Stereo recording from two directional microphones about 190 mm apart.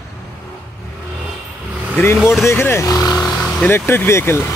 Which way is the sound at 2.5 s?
10° left (ahead or behind).